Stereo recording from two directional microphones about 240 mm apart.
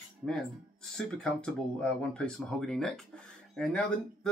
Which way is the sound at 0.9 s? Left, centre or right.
Centre.